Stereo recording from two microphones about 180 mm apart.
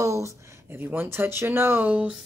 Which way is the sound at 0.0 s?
15° right (ahead or behind).